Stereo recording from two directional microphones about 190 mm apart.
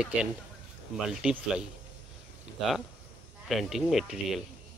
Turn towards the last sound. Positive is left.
turn(degrees=0)  # may be behind; listen again after turning